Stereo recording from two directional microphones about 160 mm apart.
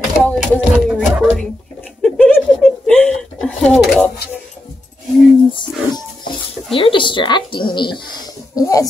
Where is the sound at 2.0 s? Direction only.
5° left (ahead or behind).